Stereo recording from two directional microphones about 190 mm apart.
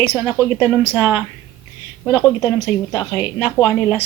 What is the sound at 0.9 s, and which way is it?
Speech, 10° right (ahead or behind).